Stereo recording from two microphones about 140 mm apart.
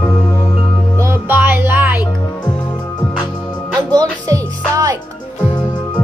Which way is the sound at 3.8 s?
25° right (ahead or behind).